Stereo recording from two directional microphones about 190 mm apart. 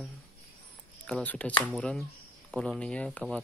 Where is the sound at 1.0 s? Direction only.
5° left (ahead or behind).